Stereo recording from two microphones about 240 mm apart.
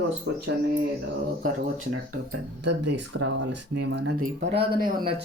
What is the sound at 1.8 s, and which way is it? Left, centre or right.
Speech, right.